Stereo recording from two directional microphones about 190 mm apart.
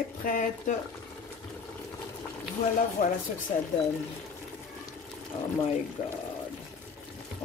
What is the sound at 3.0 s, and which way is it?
Speech, 45° left (ahead or behind).